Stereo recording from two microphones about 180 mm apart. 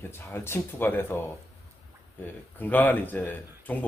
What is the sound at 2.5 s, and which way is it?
Speech, 10° left (ahead or behind).